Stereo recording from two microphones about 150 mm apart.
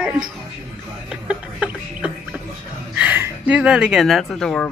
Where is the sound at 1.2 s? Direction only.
10° right (ahead or behind).